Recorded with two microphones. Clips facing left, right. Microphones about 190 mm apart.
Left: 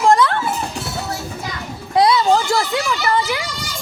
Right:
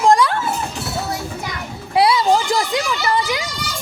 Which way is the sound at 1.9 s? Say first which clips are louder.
Left 1 dB; 10° right (ahead or behind).